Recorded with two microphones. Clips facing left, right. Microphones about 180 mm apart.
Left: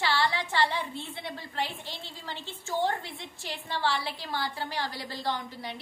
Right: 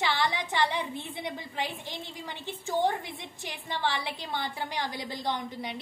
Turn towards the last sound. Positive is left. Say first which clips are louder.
# right 1 dB
turn(degrees=-20)  # may be behind; listen again after turning